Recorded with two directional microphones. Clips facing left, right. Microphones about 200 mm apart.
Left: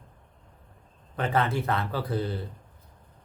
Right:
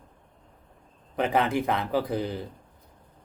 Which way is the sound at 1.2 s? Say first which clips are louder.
Right 2 dB; 15° right (ahead or behind).